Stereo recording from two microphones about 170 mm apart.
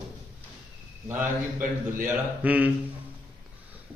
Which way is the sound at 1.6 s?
50° right (ahead or behind).